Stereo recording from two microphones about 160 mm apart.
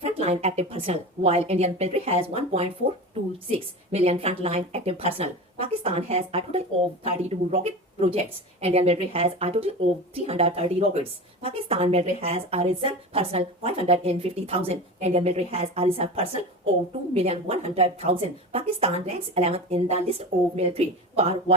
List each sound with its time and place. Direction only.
0.2 s speech: 40° right (ahead or behind)